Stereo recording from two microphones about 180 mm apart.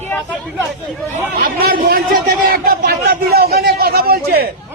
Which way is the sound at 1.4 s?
50° right (ahead or behind).